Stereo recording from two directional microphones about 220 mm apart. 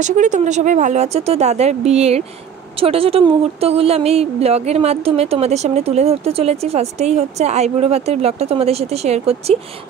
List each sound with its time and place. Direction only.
0.0 s speech: 35° right (ahead or behind)